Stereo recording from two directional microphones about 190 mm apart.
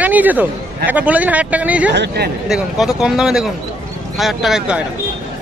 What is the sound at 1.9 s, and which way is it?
Speech, 65° right (ahead or behind).